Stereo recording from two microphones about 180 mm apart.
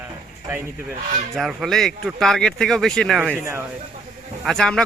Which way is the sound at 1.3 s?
Centre (ahead or behind).